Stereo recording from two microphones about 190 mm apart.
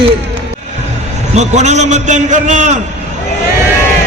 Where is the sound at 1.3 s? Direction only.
35° right (ahead or behind).